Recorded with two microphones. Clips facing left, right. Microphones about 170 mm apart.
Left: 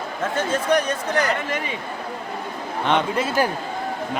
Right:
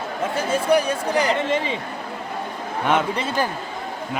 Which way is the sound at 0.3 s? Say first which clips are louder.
Right 1 dB; 10° right (ahead or behind).